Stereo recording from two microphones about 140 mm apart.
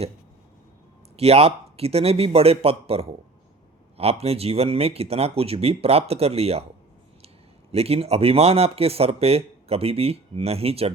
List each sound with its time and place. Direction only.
1.1 s speech: 45° right (ahead or behind)
7.7 s speech: 45° right (ahead or behind)